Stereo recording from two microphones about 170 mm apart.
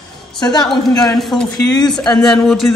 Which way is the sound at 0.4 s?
25° left (ahead or behind).